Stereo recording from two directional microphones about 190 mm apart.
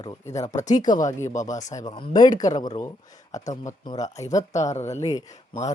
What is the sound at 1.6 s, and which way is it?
Speech, 20° left (ahead or behind).